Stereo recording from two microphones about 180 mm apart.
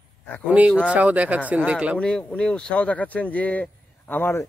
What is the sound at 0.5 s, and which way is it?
Speech, 5° right (ahead or behind).